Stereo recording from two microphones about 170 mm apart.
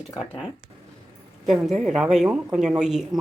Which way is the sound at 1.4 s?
Centre (ahead or behind).